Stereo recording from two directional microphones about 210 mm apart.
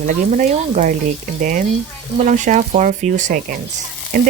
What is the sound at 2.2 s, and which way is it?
Speech, 35° right (ahead or behind).